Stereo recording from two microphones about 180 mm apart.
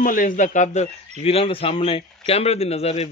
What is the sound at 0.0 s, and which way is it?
Speech, 50° left (ahead or behind).